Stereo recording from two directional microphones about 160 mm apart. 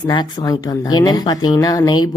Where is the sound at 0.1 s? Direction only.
25° left (ahead or behind).